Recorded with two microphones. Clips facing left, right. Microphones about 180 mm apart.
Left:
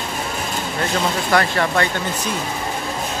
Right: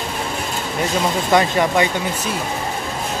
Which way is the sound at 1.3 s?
15° right (ahead or behind).